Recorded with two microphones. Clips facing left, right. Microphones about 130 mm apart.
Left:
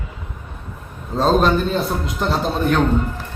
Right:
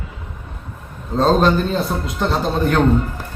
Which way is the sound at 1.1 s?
Centre (ahead or behind).